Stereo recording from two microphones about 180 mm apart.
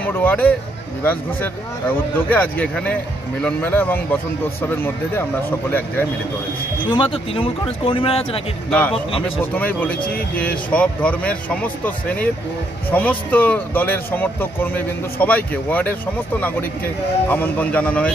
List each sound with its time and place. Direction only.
0.0 s speech: 10° left (ahead or behind)
2.1 s speech: 10° left (ahead or behind)
6.9 s a man's voice: 30° left (ahead or behind)
8.6 s speech: 10° left (ahead or behind)